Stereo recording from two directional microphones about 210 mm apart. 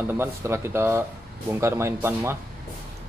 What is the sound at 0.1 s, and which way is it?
Speech, 10° right (ahead or behind).